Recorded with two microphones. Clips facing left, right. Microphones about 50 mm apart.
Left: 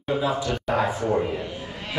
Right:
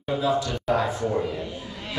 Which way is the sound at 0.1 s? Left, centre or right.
Centre.